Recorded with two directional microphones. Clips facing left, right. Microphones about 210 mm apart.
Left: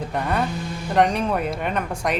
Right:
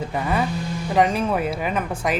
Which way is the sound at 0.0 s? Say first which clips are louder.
Right 1 dB; centre (ahead or behind).